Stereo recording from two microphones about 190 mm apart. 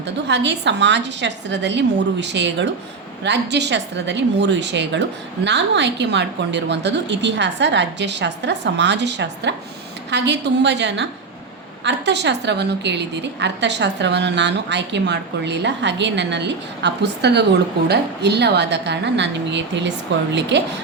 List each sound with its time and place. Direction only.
0.3 s a woman's voice: 65° right (ahead or behind)